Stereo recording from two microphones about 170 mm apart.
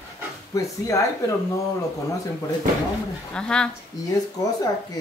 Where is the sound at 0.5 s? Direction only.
20° left (ahead or behind).